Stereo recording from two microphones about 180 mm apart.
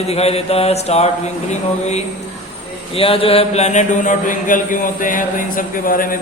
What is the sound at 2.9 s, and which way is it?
Mantra, 30° left (ahead or behind).